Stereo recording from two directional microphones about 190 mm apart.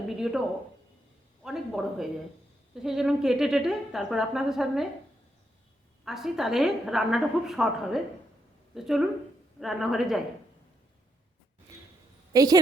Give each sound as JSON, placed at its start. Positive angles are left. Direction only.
{"t": 0.2, "sound": "a woman's voice", "side_deg": 0}
{"t": 1.5, "sound": "a woman's voice", "side_deg": 0}
{"t": 6.1, "sound": "a woman's voice", "side_deg": 0}
{"t": 12.3, "sound": "a woman's voice", "side_deg": -20}